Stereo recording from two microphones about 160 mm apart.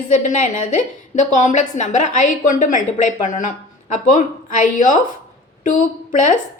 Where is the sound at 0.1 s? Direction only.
50° left (ahead or behind).